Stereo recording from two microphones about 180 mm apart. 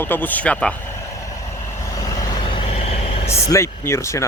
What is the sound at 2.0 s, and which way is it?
Vehicle, 25° left (ahead or behind).